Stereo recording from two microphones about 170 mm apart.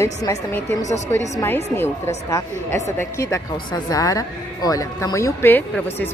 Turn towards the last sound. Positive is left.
turn(degrees=15)  # may be behind; listen again after turning